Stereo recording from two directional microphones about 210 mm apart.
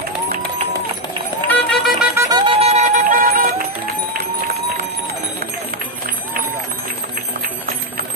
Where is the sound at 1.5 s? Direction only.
Centre (ahead or behind).